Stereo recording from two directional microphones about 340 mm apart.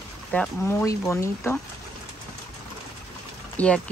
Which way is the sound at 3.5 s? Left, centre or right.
Centre.